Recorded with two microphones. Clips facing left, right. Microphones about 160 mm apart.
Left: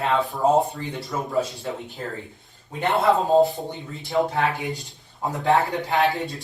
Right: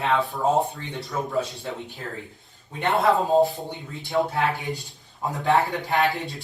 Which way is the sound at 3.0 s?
Centre (ahead or behind).